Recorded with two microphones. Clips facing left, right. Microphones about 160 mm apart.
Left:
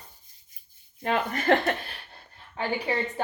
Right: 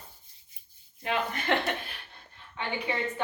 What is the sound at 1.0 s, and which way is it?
A woman's voice, 40° left (ahead or behind).